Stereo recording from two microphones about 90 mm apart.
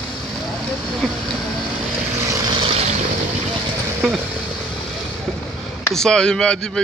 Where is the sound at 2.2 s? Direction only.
40° right (ahead or behind).